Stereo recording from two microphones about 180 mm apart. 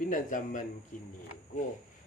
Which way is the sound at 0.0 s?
45° left (ahead or behind).